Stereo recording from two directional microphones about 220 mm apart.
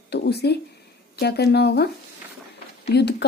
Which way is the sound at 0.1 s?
45° left (ahead or behind).